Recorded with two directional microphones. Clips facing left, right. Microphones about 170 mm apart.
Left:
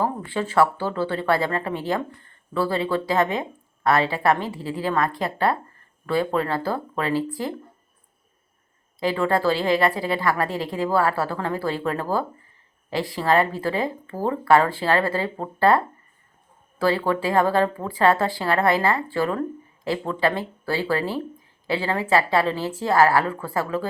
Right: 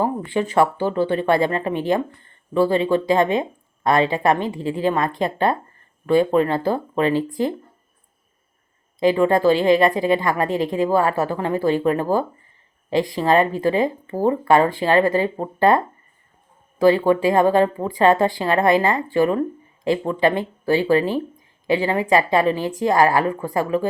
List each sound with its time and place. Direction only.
0.0 s speech: 15° right (ahead or behind)
9.0 s speech: 20° right (ahead or behind)